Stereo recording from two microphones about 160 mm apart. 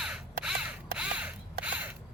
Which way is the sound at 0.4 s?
5° right (ahead or behind).